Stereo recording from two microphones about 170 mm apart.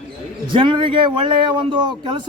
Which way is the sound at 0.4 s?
30° right (ahead or behind).